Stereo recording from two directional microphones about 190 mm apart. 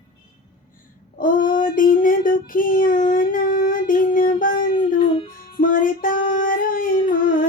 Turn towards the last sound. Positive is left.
turn(degrees=45)  # may be behind; listen again after turning